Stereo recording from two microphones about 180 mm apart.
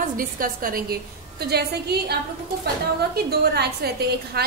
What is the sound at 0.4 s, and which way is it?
Speech, 50° right (ahead or behind).